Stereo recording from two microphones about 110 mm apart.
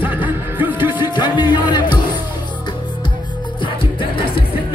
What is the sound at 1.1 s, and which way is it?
Music, 45° left (ahead or behind).